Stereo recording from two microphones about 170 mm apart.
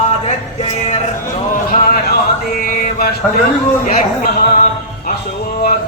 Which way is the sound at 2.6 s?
50° left (ahead or behind).